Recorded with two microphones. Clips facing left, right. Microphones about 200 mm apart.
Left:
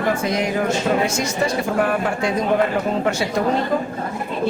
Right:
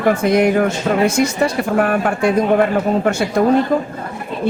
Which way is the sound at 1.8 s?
55° right (ahead or behind).